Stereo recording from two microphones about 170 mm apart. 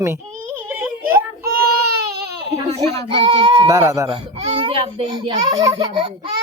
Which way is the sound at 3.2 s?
30° right (ahead or behind).